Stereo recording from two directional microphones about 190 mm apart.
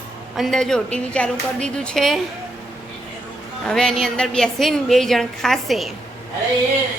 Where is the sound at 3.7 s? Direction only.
5° left (ahead or behind).